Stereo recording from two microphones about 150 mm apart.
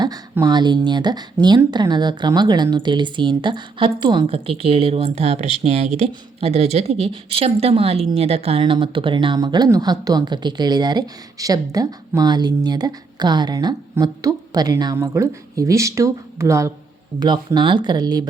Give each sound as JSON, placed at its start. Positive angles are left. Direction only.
{"t": 0.3, "sound": "speech", "side_deg": -25}
{"t": 17.2, "sound": "speech", "side_deg": -30}